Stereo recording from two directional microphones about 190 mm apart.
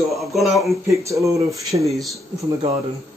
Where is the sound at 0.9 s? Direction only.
15° right (ahead or behind).